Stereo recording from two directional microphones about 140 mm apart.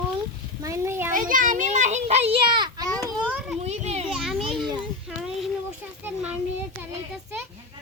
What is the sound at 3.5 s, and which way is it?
Children playing, 50° right (ahead or behind).